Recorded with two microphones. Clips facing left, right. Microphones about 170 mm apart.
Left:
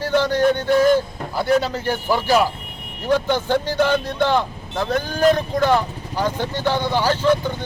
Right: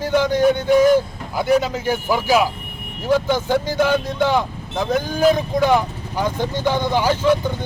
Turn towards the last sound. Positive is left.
turn(degrees=-10)  # may be behind; listen again after turning